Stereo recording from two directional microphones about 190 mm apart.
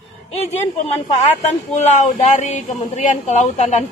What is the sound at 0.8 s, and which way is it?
A woman's voice, 35° left (ahead or behind).